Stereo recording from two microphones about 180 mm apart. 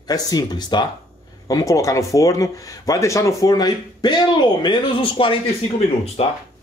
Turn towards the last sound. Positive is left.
turn(degrees=30)  # may be behind; listen again after turning